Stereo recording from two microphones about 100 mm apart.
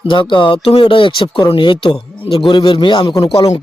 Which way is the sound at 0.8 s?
55° left (ahead or behind).